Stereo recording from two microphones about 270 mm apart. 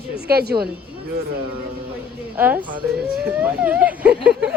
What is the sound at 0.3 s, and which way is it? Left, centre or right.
Speech, right.